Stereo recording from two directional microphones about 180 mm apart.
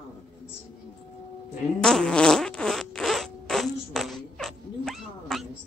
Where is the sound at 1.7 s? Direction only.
5° left (ahead or behind).